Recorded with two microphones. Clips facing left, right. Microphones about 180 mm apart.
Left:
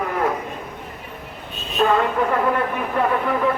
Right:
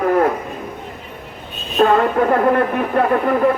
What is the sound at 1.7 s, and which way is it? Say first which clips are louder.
Speech: right 4 dB; 50° right (ahead or behind).